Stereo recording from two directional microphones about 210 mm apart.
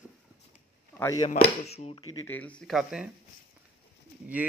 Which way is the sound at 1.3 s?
30° left (ahead or behind).